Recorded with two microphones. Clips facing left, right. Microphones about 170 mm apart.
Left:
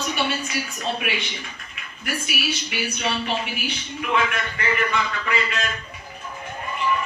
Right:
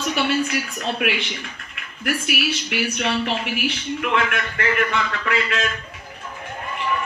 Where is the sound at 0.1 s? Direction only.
65° right (ahead or behind).